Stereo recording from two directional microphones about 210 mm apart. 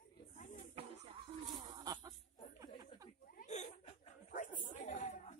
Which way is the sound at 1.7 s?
20° right (ahead or behind).